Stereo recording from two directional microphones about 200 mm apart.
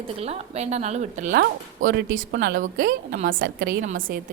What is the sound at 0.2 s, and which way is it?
A woman's voice, 30° right (ahead or behind).